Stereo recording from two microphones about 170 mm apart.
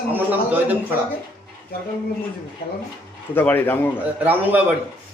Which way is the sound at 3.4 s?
10° left (ahead or behind).